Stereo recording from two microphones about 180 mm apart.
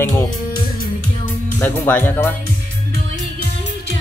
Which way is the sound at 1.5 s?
10° left (ahead or behind).